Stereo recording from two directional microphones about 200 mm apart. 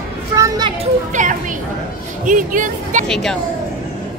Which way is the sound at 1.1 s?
40° right (ahead or behind).